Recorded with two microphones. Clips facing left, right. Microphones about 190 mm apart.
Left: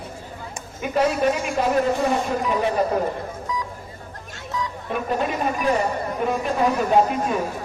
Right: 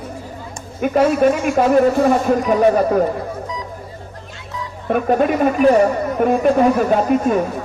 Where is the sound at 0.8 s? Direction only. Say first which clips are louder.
Right 6 dB; 55° right (ahead or behind).